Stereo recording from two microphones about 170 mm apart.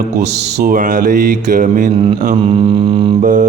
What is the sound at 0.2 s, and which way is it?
Speech, 85° right.